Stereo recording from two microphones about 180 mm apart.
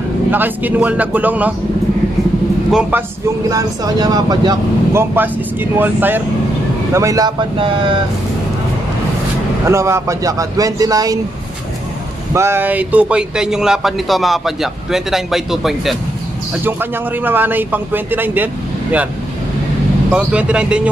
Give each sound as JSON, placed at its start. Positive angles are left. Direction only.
{"t": 0.3, "sound": "a man's voice", "side_deg": -10}
{"t": 3.4, "sound": "speech", "side_deg": -20}
{"t": 5.1, "sound": "a man's voice", "side_deg": -10}
{"t": 9.7, "sound": "speech", "side_deg": -15}
{"t": 12.4, "sound": "a man's voice", "side_deg": -15}
{"t": 20.1, "sound": "a man's voice", "side_deg": -5}